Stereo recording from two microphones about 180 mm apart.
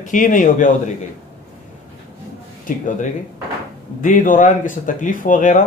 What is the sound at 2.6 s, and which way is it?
Speech, 45° left (ahead or behind).